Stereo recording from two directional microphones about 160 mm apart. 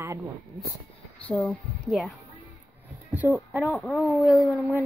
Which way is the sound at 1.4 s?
10° left (ahead or behind).